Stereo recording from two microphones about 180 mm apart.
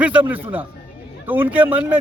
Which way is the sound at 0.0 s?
10° right (ahead or behind).